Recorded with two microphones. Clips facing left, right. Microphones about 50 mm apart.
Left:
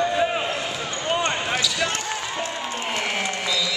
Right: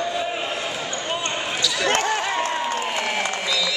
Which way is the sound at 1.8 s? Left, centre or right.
Right.